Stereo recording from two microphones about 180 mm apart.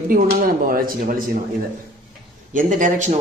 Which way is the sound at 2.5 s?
45° right (ahead or behind).